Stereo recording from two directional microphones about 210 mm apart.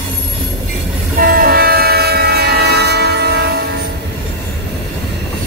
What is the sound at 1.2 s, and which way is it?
Train, 45° right (ahead or behind).